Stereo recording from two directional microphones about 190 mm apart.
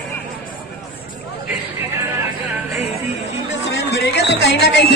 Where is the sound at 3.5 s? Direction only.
70° left (ahead or behind).